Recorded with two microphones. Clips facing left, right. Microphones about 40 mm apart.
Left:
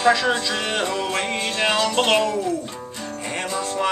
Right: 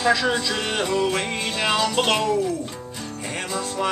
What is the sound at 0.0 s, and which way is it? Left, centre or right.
Music, centre.